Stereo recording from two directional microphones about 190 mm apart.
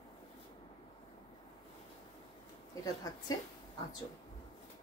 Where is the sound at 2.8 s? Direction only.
20° left (ahead or behind).